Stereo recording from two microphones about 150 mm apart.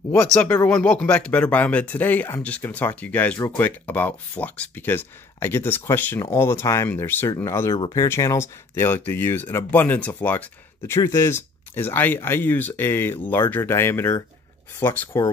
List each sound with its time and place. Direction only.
0.1 s speech: 10° left (ahead or behind)